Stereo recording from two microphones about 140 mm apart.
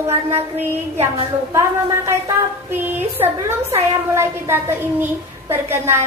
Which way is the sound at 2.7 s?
15° right (ahead or behind).